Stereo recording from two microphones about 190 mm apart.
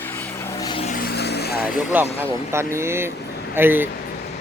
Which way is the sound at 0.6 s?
25° left (ahead or behind).